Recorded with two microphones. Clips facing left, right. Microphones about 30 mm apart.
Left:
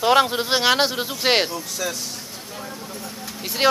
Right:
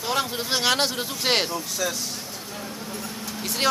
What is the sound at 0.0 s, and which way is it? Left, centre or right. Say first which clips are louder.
Speech: left 9 dB; left.